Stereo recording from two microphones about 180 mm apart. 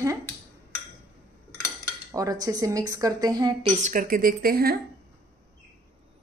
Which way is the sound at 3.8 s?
50° right (ahead or behind).